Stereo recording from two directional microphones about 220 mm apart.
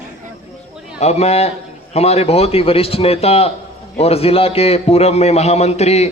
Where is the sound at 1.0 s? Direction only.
30° left (ahead or behind).